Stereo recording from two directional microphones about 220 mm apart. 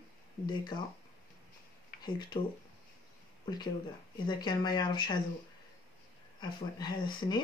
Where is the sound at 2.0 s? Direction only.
20° left (ahead or behind).